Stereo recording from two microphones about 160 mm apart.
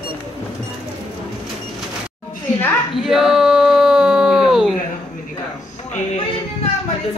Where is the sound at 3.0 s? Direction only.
Centre (ahead or behind).